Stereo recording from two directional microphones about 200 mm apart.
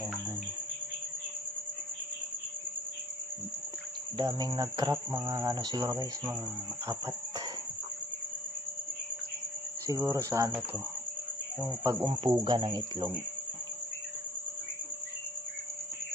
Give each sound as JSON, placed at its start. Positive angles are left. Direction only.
{"t": 4.2, "sound": "cricket", "side_deg": -20}
{"t": 9.8, "sound": "speech", "side_deg": -15}
{"t": 11.6, "sound": "cricket", "side_deg": -20}